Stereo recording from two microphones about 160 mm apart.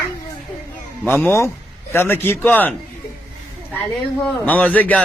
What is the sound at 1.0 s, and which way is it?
A man's voice, 10° left (ahead or behind).